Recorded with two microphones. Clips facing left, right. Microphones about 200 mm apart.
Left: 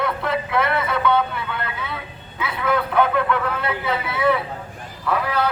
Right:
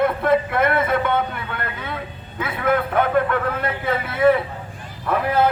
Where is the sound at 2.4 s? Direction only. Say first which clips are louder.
Right 2 dB; 50° right (ahead or behind).